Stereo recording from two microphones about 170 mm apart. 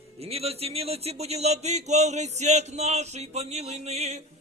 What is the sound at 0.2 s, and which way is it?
Speech, 35° right (ahead or behind).